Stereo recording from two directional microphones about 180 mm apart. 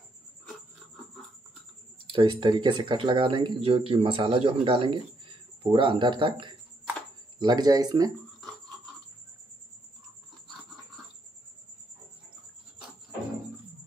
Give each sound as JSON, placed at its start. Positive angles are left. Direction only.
{"t": 2.0, "sound": "a man's voice", "side_deg": -30}